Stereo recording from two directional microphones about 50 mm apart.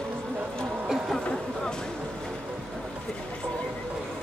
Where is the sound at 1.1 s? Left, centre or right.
Centre.